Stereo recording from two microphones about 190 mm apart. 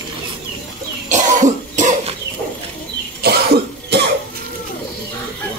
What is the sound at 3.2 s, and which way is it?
Cough, 55° right (ahead or behind).